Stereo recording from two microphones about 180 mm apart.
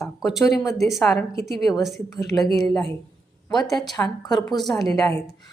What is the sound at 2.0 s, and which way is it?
Speech, 20° left (ahead or behind).